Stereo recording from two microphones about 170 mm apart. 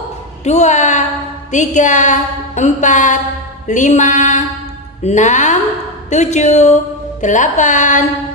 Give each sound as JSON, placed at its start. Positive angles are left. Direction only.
{"t": 0.4, "sound": "a woman's voice", "side_deg": 40}
{"t": 6.0, "sound": "music", "side_deg": 45}